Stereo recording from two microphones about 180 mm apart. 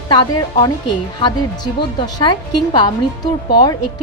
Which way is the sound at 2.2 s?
20° left (ahead or behind).